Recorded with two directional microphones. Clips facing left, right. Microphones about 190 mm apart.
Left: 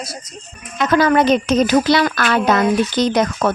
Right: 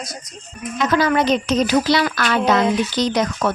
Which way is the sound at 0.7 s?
55° left (ahead or behind).